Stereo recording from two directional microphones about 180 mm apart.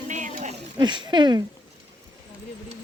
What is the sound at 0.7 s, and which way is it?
Speech, 25° right (ahead or behind).